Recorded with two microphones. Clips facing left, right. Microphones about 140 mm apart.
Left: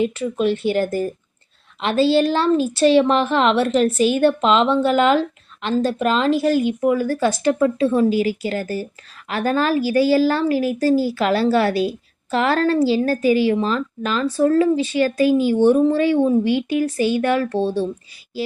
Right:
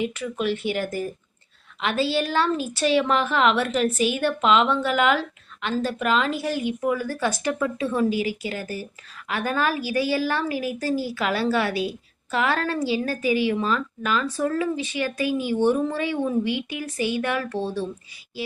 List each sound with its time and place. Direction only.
0.0 s a woman's voice: 30° left (ahead or behind)